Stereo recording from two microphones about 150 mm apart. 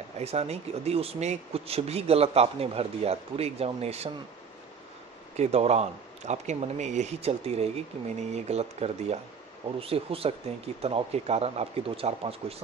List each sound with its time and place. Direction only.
0.2 s speech: 45° right (ahead or behind)
5.4 s speech: 45° right (ahead or behind)